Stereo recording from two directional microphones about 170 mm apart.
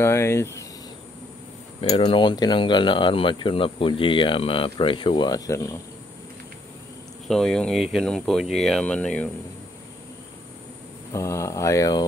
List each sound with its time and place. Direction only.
0.0 s speech: 15° left (ahead or behind)
1.8 s speech: 35° left (ahead or behind); by 5.8 s 20° left (ahead or behind)
7.2 s speech: 5° left (ahead or behind)
11.1 s speech: 15° left (ahead or behind)